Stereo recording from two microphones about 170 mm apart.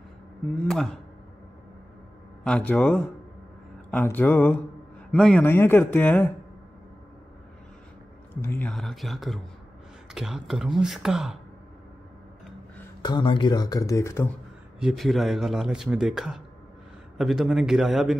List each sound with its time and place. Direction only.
0.7 s a man's voice: centre (ahead or behind)
2.4 s a man's voice: 5° left (ahead or behind)
8.4 s a man's voice: 10° left (ahead or behind)
13.0 s speech: 25° left (ahead or behind)
14.8 s a man's voice: centre (ahead or behind)